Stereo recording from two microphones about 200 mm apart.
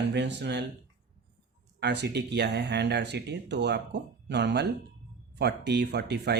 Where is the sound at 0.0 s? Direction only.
60° right (ahead or behind).